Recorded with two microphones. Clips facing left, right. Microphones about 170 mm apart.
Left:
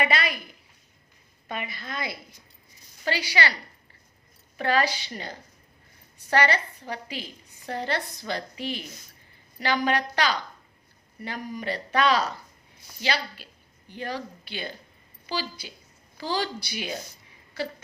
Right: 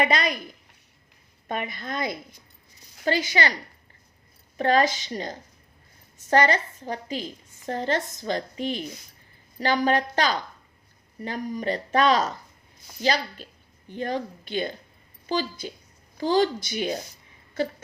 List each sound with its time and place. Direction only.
0.0 s speech: 40° right (ahead or behind)
1.5 s a woman's voice: 45° right (ahead or behind)
4.5 s a woman's voice: 40° right (ahead or behind)
13.9 s a woman's voice: 45° right (ahead or behind)